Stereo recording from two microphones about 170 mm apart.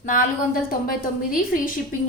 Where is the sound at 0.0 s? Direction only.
50° left (ahead or behind).